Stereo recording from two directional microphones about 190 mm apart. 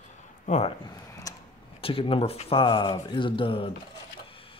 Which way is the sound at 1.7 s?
30° left (ahead or behind).